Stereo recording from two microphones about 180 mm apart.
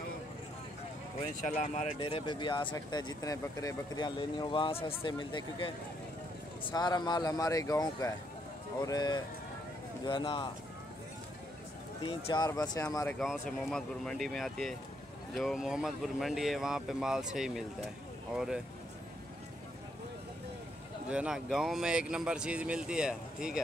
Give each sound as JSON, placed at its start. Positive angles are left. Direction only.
{"t": 1.5, "sound": "speech", "side_deg": 40}
{"t": 2.0, "sound": "speech", "side_deg": 25}
{"t": 12.0, "sound": "speech", "side_deg": 30}
{"t": 13.2, "sound": "speech", "side_deg": 0}
{"t": 21.1, "sound": "speech", "side_deg": -5}